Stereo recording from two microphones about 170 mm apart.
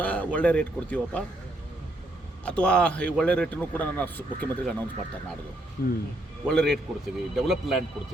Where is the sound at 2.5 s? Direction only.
5° left (ahead or behind).